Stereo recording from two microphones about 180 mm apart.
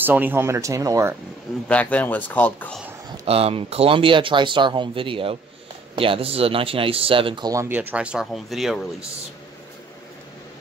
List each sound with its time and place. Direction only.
0.0 s speech: 10° right (ahead or behind)
1.7 s speech: 10° left (ahead or behind)
3.1 s speech: 35° right (ahead or behind); by 8.8 s centre (ahead or behind)